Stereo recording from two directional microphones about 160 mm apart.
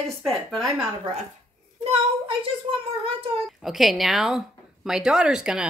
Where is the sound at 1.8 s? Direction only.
40° right (ahead or behind).